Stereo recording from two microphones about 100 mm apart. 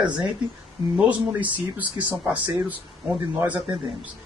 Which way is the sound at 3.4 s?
15° right (ahead or behind).